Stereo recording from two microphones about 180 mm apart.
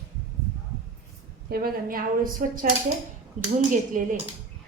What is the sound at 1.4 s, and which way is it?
A woman's voice, 55° right (ahead or behind).